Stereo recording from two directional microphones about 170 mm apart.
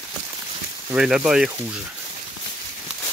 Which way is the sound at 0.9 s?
5° right (ahead or behind).